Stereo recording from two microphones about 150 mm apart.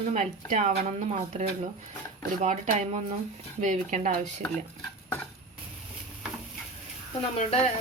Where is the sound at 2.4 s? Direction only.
50° right (ahead or behind).